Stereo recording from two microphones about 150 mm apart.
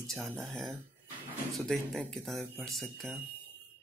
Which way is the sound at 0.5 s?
Centre (ahead or behind).